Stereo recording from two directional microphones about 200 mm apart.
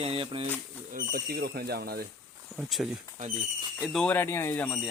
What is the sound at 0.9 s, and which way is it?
Speech, 50° right (ahead or behind).